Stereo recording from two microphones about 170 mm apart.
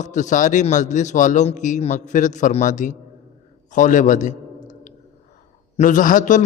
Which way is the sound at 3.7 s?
50° left (ahead or behind).